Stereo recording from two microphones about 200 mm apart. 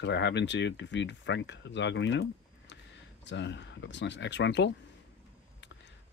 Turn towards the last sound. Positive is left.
turn(degrees=60)  # may be behind; listen again after turning